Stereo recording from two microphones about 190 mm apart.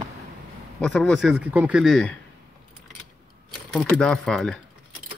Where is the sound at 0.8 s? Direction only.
5° left (ahead or behind).